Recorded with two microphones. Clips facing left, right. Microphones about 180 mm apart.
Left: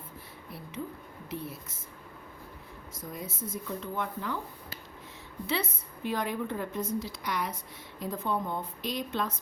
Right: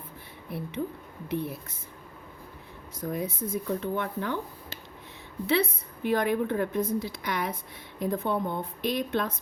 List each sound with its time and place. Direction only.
0.5 s a woman's voice: 60° right (ahead or behind)
3.0 s a woman's voice: 60° right (ahead or behind)
5.5 s a woman's voice: 60° right (ahead or behind)